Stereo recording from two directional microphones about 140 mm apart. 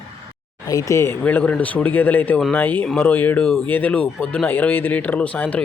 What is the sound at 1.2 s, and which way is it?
Speech, 10° left (ahead or behind).